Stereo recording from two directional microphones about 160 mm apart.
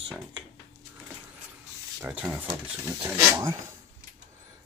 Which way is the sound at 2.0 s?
5° right (ahead or behind).